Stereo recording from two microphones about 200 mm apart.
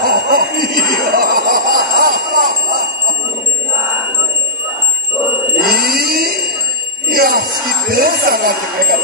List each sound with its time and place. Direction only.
0.0 s bicycle bell: 45° right (ahead or behind)
5.6 s a sound: 45° right (ahead or behind)
7.1 s jingle bell: 45° right (ahead or behind)
7.9 s speech: 45° right (ahead or behind)